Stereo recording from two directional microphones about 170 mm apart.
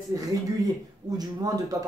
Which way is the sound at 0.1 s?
20° right (ahead or behind).